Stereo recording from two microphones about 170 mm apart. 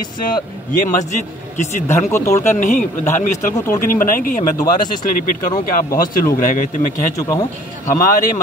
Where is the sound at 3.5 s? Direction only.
15° left (ahead or behind).